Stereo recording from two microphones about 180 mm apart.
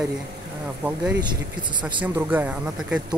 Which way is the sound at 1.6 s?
25° right (ahead or behind).